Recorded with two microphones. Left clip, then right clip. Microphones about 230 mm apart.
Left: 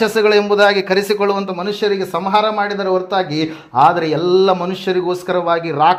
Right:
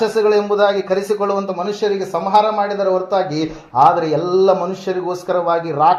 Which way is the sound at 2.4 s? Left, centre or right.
Left.